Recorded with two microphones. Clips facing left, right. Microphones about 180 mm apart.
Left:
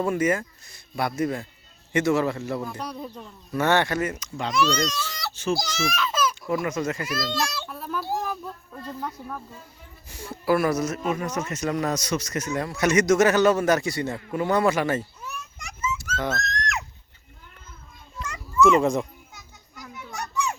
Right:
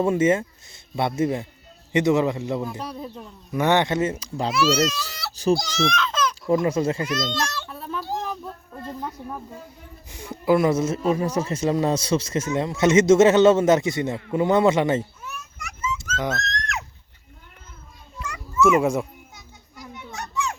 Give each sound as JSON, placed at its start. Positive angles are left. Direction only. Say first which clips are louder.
{"t": 0.0, "sound": "speech", "louder": "right 4 dB", "side_deg": -25}
{"t": 2.6, "sound": "speech", "louder": "right 1 dB", "side_deg": 0}
{"t": 3.5, "sound": "speech", "louder": "right 2 dB", "side_deg": -15}
{"t": 4.5, "sound": "speech", "louder": "right 3 dB", "side_deg": -5}
{"t": 5.3, "sound": "speech", "louder": "right 6 dB", "side_deg": -35}
{"t": 5.5, "sound": "speech", "louder": "right 3 dB", "side_deg": 0}
{"t": 6.5, "sound": "speech", "louder": "right 5 dB", "side_deg": -25}
{"t": 7.3, "sound": "a child's voice", "louder": "even", "side_deg": 10}
{"t": 7.7, "sound": "a sound", "louder": "even", "side_deg": 0}
{"t": 8.7, "sound": "speech", "louder": "right 1 dB", "side_deg": -15}
{"t": 16.3, "sound": "a sound", "louder": "even", "side_deg": 5}
{"t": 18.2, "sound": "children playing", "louder": "even", "side_deg": -10}